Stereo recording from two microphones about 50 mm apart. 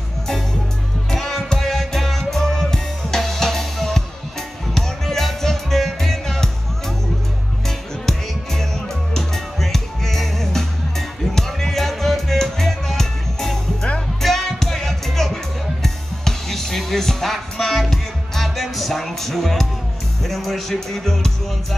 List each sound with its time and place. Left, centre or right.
1.1 s music: centre
7.6 s music: centre